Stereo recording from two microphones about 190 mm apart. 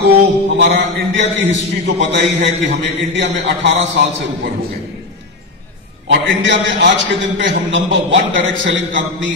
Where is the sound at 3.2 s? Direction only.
70° right (ahead or behind).